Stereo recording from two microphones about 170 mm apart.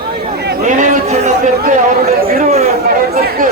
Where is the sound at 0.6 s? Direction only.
45° right (ahead or behind).